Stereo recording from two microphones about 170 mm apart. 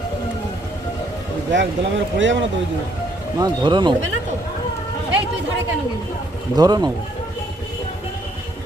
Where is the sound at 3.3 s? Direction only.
25° right (ahead or behind).